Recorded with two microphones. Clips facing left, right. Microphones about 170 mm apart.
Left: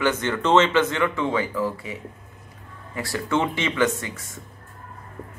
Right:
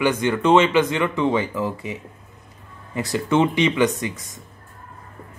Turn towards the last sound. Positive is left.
turn(degrees=-15)  # may be behind; listen again after turning